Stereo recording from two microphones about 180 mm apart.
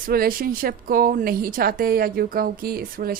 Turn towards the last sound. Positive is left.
turn(degrees=-55)  # may be behind; listen again after turning